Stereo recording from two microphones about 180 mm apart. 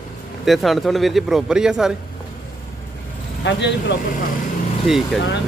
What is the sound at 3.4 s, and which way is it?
Speech, 75° left (ahead or behind).